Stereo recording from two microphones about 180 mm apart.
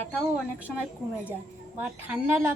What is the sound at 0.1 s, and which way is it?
Speech, 5° right (ahead or behind).